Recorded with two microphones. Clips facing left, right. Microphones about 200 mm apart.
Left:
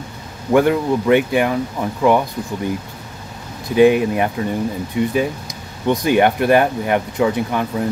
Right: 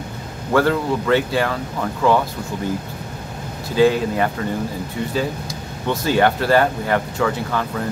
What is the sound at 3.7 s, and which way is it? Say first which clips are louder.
Speech: left 4 dB; 20° left (ahead or behind).